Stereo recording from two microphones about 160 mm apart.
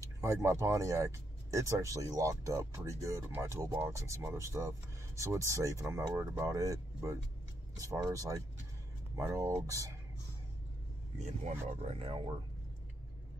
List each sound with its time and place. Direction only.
0.2 s speech: 15° right (ahead or behind)
11.6 s speech: 45° right (ahead or behind)